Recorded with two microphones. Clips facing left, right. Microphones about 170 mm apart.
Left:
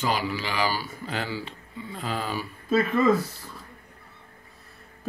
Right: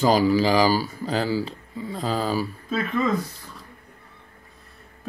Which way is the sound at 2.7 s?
5° left (ahead or behind).